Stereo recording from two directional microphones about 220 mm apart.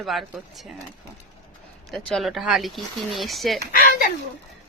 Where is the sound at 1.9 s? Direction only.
5° left (ahead or behind).